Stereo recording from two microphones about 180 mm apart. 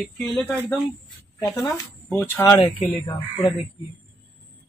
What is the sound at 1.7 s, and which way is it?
Speech, 10° left (ahead or behind).